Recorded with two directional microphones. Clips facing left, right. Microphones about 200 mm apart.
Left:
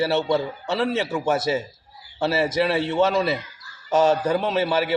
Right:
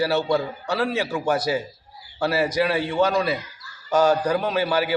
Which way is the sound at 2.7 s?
25° left (ahead or behind).